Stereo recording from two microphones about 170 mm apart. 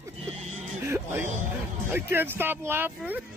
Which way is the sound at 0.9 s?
15° right (ahead or behind).